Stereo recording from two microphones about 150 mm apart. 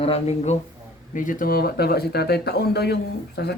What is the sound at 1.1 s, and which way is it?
Speech, 60° left (ahead or behind).